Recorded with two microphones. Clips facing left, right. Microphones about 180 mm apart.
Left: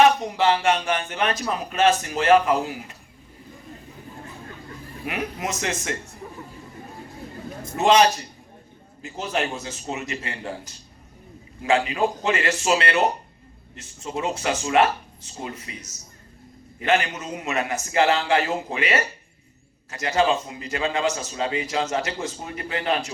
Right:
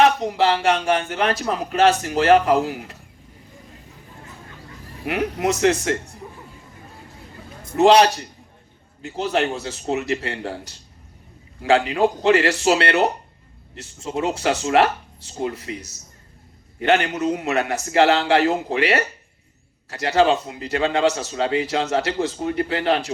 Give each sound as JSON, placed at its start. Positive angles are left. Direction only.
{"t": 0.0, "sound": "a man's voice", "side_deg": -70}
{"t": 5.0, "sound": "a man's voice", "side_deg": -75}
{"t": 7.8, "sound": "a man's voice", "side_deg": -70}
{"t": 16.8, "sound": "a man's voice", "side_deg": -65}